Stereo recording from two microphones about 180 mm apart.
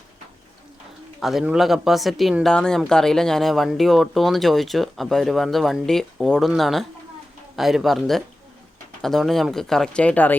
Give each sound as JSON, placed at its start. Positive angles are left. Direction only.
{"t": 1.2, "sound": "speech", "side_deg": 0}